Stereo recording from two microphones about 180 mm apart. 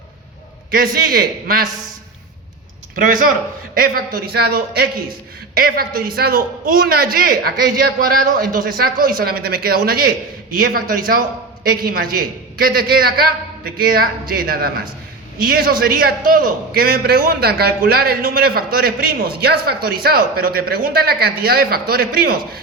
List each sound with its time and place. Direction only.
0.7 s a man's voice: 55° right (ahead or behind)
2.9 s a man's voice: 50° right (ahead or behind)